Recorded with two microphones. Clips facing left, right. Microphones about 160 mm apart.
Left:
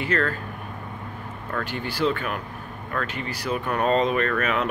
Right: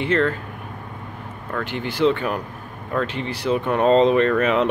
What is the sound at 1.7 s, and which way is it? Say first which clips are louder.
Speech: right 6 dB; 20° right (ahead or behind).